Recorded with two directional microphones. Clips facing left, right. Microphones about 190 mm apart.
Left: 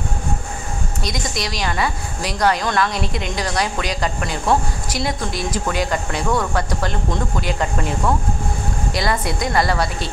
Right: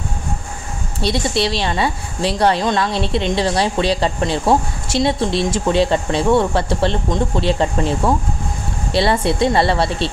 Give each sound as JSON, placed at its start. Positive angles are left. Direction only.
{"t": 1.0, "sound": "a woman's voice", "side_deg": -30}